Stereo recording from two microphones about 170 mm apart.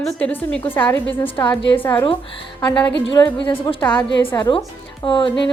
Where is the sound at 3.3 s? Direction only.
30° left (ahead or behind).